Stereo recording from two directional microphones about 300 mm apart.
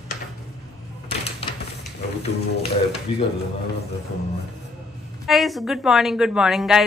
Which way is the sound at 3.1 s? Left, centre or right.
Left.